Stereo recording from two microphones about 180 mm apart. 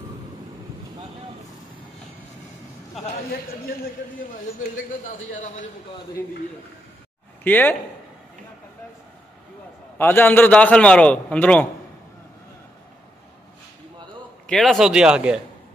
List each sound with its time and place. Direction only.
5.3 s a man's voice: 45° left (ahead or behind)
7.4 s a man's voice: 10° left (ahead or behind)
9.9 s a man's voice: 10° left (ahead or behind)
14.5 s speech: centre (ahead or behind)